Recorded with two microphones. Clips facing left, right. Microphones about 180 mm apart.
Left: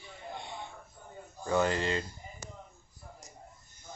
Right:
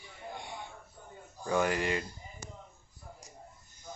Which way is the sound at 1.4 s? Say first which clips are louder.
Left 1 dB; 10° right (ahead or behind).